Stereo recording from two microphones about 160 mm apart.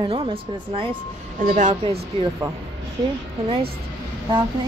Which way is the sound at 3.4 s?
35° right (ahead or behind).